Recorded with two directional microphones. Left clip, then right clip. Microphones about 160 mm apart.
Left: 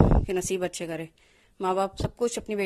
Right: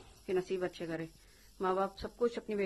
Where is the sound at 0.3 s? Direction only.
45° left (ahead or behind).